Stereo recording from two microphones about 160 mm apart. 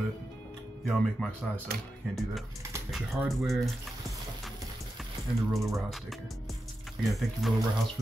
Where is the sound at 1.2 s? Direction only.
10° left (ahead or behind).